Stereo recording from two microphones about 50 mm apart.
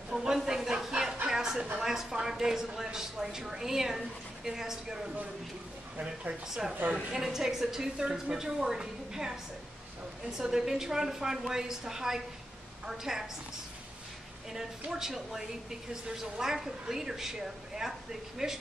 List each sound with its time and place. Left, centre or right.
0.1 s a sound: centre
1.8 s a woman's voice: centre
6.7 s a woman's voice: right
7.1 s a woman's voice: centre
10.3 s a woman's voice: centre
14.9 s a woman's voice: centre